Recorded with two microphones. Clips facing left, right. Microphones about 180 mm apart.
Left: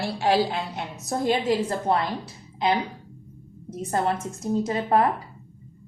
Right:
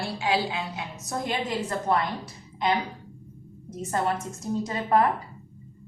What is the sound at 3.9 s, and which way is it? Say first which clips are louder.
A woman's voice: left 2 dB; 25° left (ahead or behind).